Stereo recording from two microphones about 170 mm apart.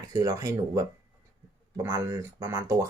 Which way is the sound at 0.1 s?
20° right (ahead or behind).